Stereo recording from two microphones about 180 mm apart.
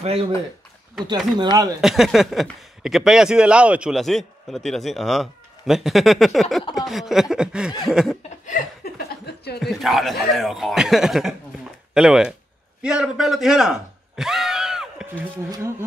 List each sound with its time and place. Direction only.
0.0 s speech: 35° right (ahead or behind)
1.8 s a man's voice: centre (ahead or behind)
8.5 s chuckle: 45° left (ahead or behind)
9.2 s a sound: 65° left (ahead or behind)
9.6 s a man's voice: centre (ahead or behind)